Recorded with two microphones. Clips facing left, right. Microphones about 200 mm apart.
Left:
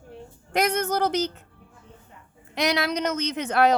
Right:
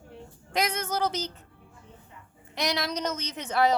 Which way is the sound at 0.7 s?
60° left (ahead or behind).